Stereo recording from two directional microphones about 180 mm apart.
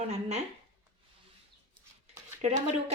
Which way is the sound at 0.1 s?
35° right (ahead or behind).